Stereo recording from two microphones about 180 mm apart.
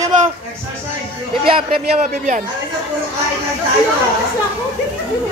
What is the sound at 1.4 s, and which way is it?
Speech, 30° right (ahead or behind).